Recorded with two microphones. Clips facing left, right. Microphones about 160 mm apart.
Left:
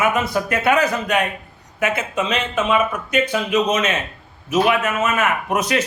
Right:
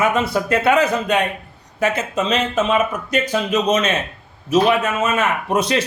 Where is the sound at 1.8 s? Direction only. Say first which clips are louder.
Right 2 dB; 40° right (ahead or behind).